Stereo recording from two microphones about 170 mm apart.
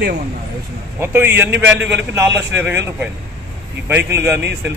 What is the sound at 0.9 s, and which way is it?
Speech, 15° right (ahead or behind).